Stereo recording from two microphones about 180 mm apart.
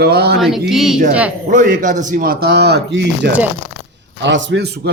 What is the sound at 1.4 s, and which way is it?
A man's voice, 45° right (ahead or behind).